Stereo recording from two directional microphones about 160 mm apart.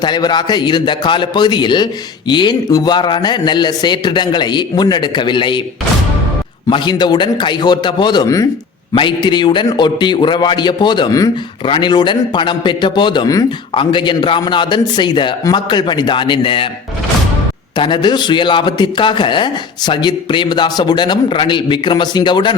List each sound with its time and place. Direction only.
0.0 s a man's voice: 25° left (ahead or behind)
6.7 s a man's voice: 30° left (ahead or behind)
17.7 s a man's voice: 30° left (ahead or behind)